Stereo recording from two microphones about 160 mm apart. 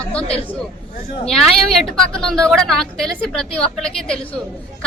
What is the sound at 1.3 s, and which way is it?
Speech, centre (ahead or behind).